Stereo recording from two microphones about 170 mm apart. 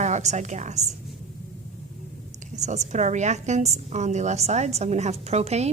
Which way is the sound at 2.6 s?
40° right (ahead or behind).